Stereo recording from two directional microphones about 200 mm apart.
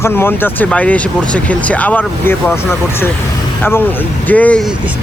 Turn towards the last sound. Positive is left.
turn(degrees=5)  # may be behind; listen again after turning